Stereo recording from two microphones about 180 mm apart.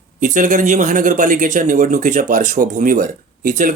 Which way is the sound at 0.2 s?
45° right (ahead or behind).